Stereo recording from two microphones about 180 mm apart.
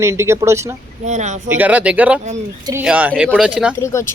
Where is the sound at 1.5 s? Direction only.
10° right (ahead or behind).